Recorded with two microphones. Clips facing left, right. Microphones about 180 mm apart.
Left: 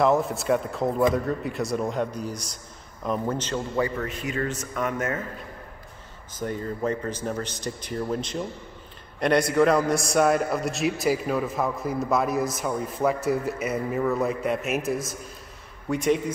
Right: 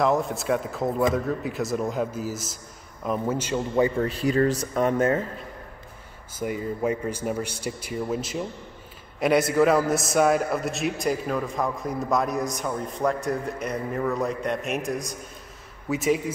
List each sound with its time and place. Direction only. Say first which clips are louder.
0.0 s a man's voice: left 1 dB; centre (ahead or behind)
3.7 s speech: right 6 dB; 25° right (ahead or behind)
6.3 s a man's voice: right 1 dB; 10° right (ahead or behind)